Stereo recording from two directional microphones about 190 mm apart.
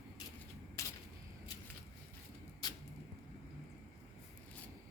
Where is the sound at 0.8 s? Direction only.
15° left (ahead or behind).